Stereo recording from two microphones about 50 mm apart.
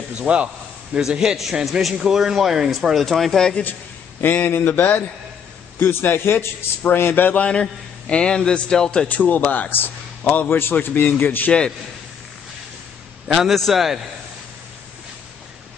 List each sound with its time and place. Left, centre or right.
0.3 s speech: right
0.9 s a man's voice: centre
4.2 s a man's voice: left
5.8 s a man's voice: left
7.2 s a man's voice: left
9.1 s a man's voice: left
13.3 s speech: centre